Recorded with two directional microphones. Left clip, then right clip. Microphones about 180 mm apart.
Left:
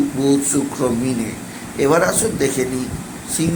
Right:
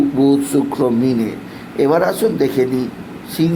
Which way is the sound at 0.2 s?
20° right (ahead or behind).